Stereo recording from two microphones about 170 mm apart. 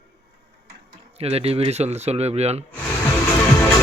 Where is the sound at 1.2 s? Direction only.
35° right (ahead or behind).